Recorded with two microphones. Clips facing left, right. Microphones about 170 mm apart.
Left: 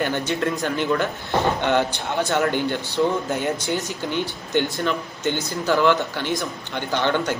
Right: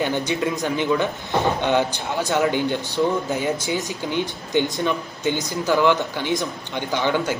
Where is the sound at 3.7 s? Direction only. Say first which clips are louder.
Even; 15° right (ahead or behind).